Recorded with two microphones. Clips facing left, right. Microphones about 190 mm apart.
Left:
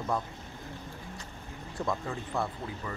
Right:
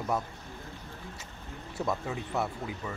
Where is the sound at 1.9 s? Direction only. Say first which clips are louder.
Right 1 dB; 5° right (ahead or behind).